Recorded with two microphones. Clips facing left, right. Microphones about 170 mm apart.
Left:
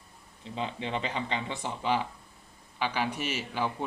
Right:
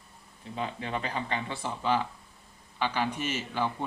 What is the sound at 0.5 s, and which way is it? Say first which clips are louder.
A man's voice: even; 25° left (ahead or behind).